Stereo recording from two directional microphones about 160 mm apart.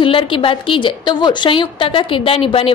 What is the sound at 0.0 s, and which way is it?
A woman's voice, 35° left (ahead or behind).